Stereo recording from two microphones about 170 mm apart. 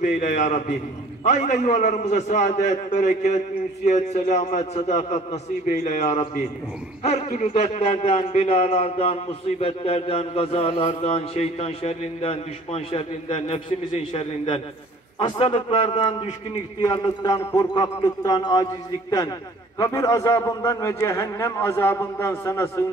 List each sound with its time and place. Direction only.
0.0 s a man's voice: 50° left (ahead or behind); by 22.8 s 15° left (ahead or behind)